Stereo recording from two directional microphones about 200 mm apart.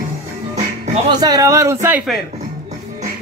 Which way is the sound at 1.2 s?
15° right (ahead or behind).